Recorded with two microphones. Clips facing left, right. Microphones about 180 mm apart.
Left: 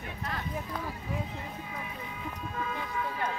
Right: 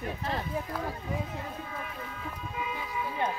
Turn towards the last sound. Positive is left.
turn(degrees=-15)  # may be behind; listen again after turning